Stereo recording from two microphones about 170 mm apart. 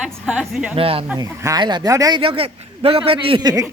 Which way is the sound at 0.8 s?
35° right (ahead or behind).